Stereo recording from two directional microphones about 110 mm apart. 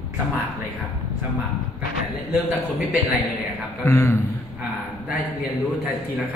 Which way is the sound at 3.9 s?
25° left (ahead or behind).